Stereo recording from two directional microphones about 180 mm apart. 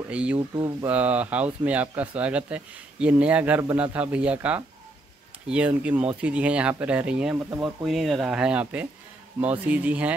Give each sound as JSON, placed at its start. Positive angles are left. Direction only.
{"t": 0.1, "sound": "speech", "side_deg": -5}
{"t": 0.6, "sound": "speech", "side_deg": -25}
{"t": 0.8, "sound": "speech", "side_deg": -10}